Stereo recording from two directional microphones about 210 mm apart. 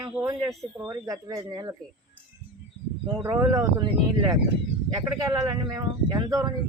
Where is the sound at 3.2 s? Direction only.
15° right (ahead or behind).